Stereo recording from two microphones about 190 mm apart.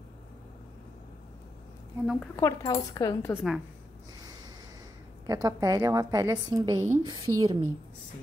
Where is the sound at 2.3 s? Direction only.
20° left (ahead or behind).